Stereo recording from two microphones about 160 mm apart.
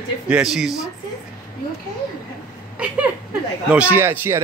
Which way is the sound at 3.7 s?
10° right (ahead or behind).